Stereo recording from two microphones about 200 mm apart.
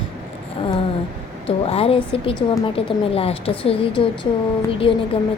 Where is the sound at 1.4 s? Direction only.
30° left (ahead or behind).